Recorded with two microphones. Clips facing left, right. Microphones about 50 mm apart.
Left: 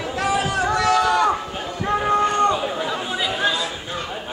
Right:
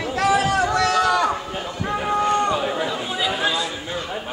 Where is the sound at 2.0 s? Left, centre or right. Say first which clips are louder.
Left 1 dB; left.